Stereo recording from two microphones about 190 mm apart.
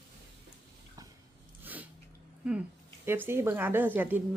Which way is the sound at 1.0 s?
20° right (ahead or behind).